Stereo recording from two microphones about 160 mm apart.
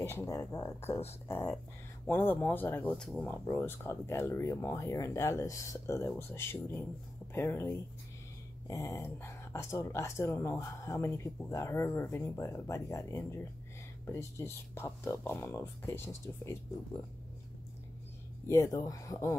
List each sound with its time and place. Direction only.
0.0 s speech: 15° left (ahead or behind)
18.5 s speech: 20° left (ahead or behind)